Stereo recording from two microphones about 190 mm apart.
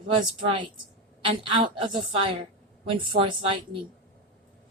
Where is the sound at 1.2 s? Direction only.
30° right (ahead or behind).